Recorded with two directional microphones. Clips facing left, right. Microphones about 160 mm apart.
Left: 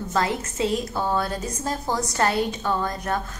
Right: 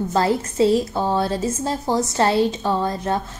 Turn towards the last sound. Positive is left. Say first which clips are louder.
# right 4 dB
turn(degrees=-25)  # may be behind; listen again after turning